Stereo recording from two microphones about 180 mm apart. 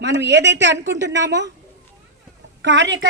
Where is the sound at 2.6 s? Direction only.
80° right.